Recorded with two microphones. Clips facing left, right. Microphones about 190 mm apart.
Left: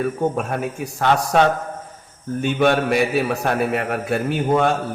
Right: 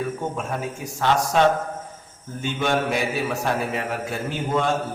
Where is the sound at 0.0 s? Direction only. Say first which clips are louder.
Left 6 dB; 60° left (ahead or behind).